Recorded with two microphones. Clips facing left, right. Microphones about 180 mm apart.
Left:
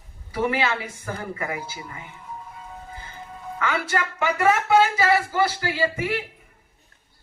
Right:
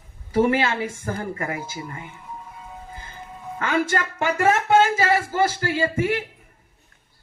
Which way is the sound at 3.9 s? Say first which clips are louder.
Right 1 dB; 45° right (ahead or behind).